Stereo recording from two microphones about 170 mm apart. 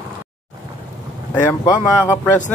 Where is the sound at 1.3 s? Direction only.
20° left (ahead or behind).